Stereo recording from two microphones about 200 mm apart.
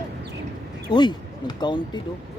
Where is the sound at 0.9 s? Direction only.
20° left (ahead or behind).